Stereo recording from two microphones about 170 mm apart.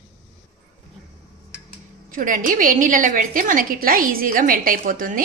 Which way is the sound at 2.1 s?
50° right (ahead or behind).